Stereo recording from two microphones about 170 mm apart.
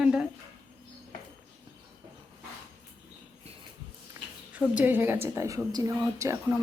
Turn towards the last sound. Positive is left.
turn(degrees=-15)  # may be behind; listen again after turning